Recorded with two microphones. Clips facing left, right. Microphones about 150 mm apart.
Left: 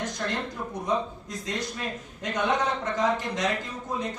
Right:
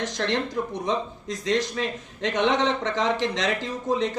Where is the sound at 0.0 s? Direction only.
90° right.